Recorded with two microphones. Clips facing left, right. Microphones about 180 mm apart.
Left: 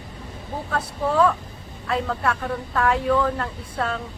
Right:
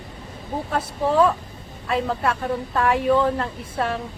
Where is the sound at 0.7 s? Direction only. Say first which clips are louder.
Right 2 dB; 25° right (ahead or behind).